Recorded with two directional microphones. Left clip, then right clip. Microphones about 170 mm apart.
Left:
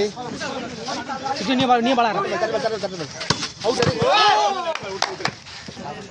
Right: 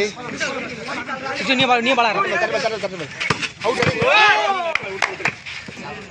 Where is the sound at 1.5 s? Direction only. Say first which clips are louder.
Right 2 dB; 70° left (ahead or behind).